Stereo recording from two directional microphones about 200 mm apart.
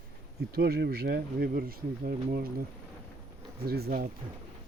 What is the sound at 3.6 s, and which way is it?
Speech, 50° right (ahead or behind).